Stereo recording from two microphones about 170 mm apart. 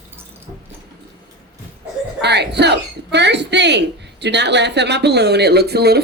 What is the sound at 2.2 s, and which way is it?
Speech, 80° right.